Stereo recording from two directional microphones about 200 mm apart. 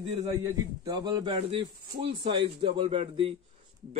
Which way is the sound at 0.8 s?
20° right (ahead or behind).